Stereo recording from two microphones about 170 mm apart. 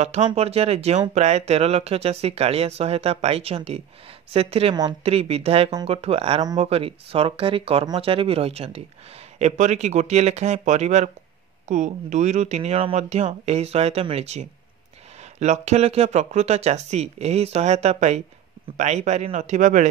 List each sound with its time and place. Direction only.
0.0 s speech: 40° right (ahead or behind)